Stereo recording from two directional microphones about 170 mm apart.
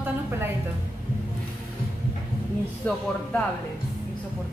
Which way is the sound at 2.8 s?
10° left (ahead or behind).